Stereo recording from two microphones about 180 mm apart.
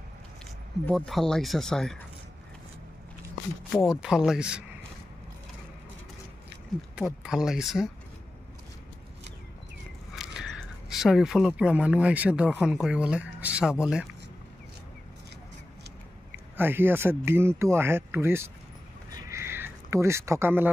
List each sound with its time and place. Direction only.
0.8 s speech: centre (ahead or behind)
3.7 s speech: centre (ahead or behind)
7.2 s speech: 5° right (ahead or behind)
10.1 s a sound: centre (ahead or behind)
10.9 s speech: centre (ahead or behind)
16.5 s speech: 10° right (ahead or behind)
19.1 s a sound: 15° right (ahead or behind)